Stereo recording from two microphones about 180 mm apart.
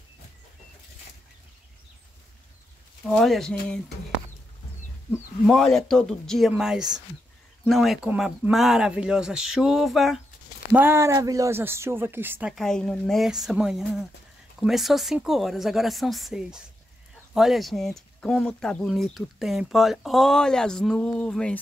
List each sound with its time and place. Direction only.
3.1 s speech: centre (ahead or behind)
5.5 s speech: 5° left (ahead or behind)
10.7 s speech: 10° right (ahead or behind); by 21.5 s 5° left (ahead or behind)